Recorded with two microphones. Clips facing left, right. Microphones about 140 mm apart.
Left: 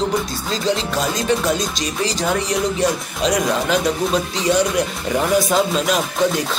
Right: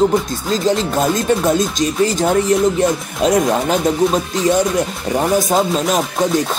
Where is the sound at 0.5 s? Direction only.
45° right (ahead or behind).